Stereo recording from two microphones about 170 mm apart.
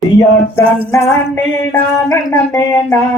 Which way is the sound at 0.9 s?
15° left (ahead or behind).